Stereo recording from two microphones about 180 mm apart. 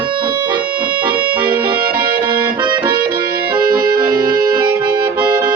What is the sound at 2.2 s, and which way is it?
Accordion, 25° right (ahead or behind).